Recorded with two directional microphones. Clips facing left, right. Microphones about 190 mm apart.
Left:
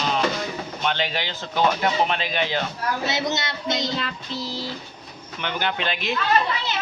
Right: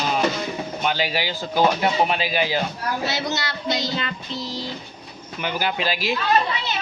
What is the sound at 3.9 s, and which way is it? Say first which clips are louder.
Speech: right 1 dB; centre (ahead or behind).